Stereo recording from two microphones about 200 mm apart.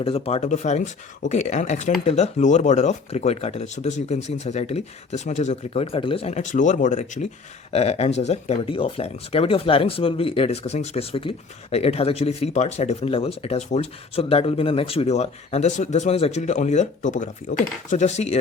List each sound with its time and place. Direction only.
0.0 s speech: 30° left (ahead or behind)